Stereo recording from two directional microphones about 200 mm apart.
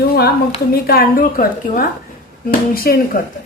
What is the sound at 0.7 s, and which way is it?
A woman's voice, 50° left (ahead or behind).